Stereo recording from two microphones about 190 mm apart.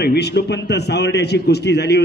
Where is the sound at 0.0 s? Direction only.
60° left (ahead or behind).